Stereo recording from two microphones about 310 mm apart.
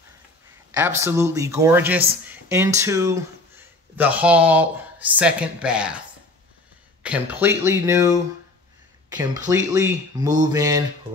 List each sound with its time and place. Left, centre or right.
0.7 s speech: centre